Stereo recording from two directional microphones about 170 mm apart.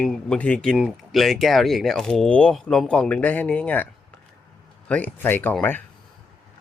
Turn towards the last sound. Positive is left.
turn(degrees=10)  # may be behind; listen again after turning